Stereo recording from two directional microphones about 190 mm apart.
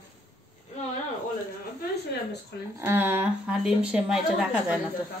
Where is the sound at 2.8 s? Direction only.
10° right (ahead or behind).